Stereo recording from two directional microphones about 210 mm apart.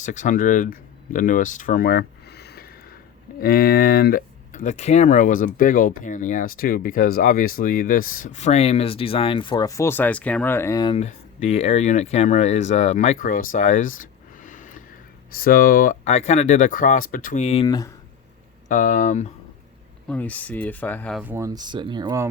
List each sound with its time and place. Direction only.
0.0 s speech: 35° left (ahead or behind)
17.7 s speech: 15° left (ahead or behind)
18.7 s speech: 35° left (ahead or behind)
20.1 s speech: 5° left (ahead or behind)
21.2 s speech: 10° right (ahead or behind)